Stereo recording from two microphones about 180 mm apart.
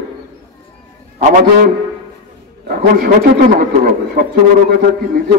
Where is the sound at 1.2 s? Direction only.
45° right (ahead or behind).